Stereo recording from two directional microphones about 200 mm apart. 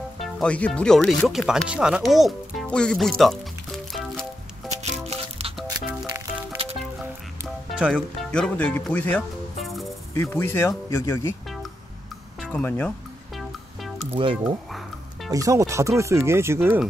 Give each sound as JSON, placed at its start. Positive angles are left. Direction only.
{"t": 0.2, "sound": "speech", "side_deg": 5}
{"t": 3.2, "sound": "music", "side_deg": 0}
{"t": 4.6, "sound": "music", "side_deg": -35}
{"t": 5.7, "sound": "music", "side_deg": -20}
{"t": 6.8, "sound": "music", "side_deg": 0}
{"t": 10.1, "sound": "speech", "side_deg": 10}
{"t": 12.4, "sound": "speech", "side_deg": 5}
{"t": 13.4, "sound": "music", "side_deg": 0}
{"t": 13.9, "sound": "music", "side_deg": -30}
{"t": 14.4, "sound": "music", "side_deg": 0}
{"t": 15.3, "sound": "speech", "side_deg": -15}